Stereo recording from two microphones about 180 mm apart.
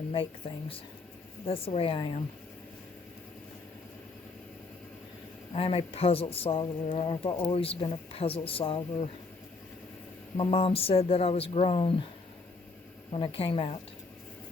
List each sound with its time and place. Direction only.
0.4 s speech: 30° left (ahead or behind)
5.5 s speech: 35° left (ahead or behind)
10.3 s speech: 30° left (ahead or behind)
13.1 s speech: 30° left (ahead or behind)